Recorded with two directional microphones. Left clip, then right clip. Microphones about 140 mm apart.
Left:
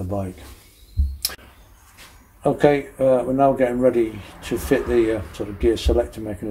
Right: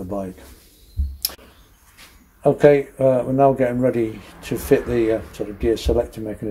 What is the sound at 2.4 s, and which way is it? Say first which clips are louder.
Speech: right 4 dB; 30° right (ahead or behind).